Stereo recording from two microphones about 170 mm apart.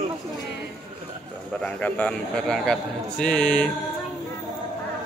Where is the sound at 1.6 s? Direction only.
5° left (ahead or behind).